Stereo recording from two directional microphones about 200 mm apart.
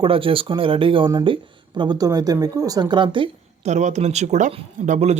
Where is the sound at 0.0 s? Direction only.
25° right (ahead or behind).